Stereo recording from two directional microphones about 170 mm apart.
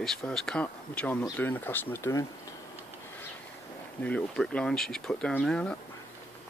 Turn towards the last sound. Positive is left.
turn(degrees=5)  # may be behind; listen again after turning